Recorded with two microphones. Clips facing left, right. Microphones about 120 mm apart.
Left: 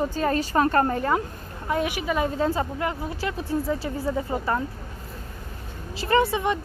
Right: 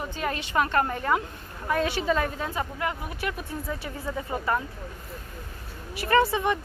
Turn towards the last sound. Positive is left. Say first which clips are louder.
# left 1 dB
turn(degrees=20)  # may be behind; listen again after turning